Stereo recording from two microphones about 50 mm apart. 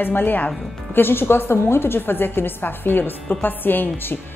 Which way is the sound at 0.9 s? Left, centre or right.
Left.